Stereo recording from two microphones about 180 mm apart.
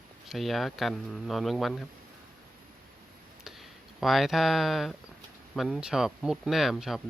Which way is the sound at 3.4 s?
Centre (ahead or behind).